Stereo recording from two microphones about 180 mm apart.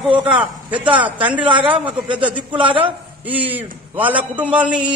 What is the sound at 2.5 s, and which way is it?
Speech, 30° right (ahead or behind).